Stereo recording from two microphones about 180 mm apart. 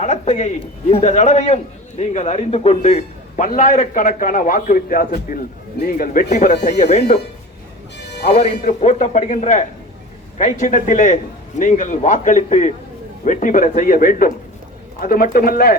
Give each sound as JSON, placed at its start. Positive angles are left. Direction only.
{"t": 0.0, "sound": "a man's voice", "side_deg": 40}
{"t": 6.7, "sound": "a man's voice", "side_deg": 40}
{"t": 8.3, "sound": "a man's voice", "side_deg": 35}